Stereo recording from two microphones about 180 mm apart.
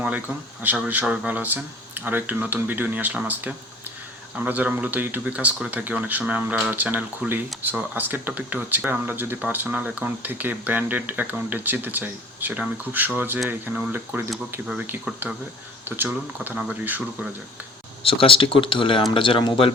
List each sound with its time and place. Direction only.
0.6 s speech: 10° right (ahead or behind)
18.0 s speech: 30° left (ahead or behind)